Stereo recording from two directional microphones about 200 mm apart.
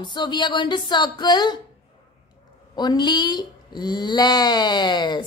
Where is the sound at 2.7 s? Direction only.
20° left (ahead or behind).